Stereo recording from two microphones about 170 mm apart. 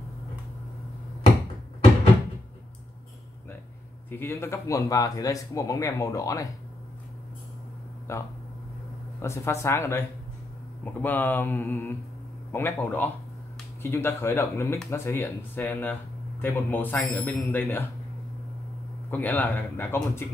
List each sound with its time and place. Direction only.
4.1 s speech: 15° left (ahead or behind)
8.1 s speech: 15° left (ahead or behind)
19.0 s speech: 10° left (ahead or behind)